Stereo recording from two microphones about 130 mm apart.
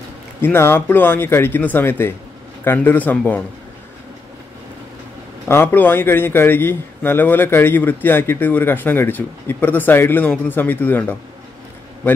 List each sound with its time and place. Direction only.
0.4 s a man's voice: 15° left (ahead or behind)
5.5 s a man's voice: 15° left (ahead or behind)